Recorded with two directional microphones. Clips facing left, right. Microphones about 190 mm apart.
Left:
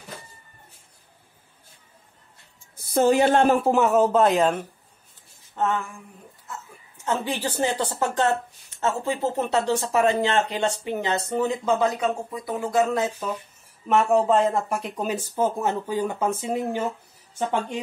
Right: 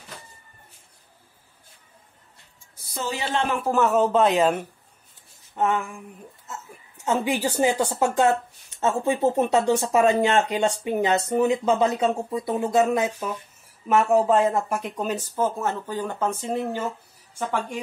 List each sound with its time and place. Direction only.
2.9 s speech: 55° left (ahead or behind)
3.7 s speech: 10° left (ahead or behind)
5.5 s a sound: 15° right (ahead or behind)
7.1 s speech: 10° right (ahead or behind)
13.8 s a woman's voice: 5° right (ahead or behind); by 17.7 s 20° left (ahead or behind)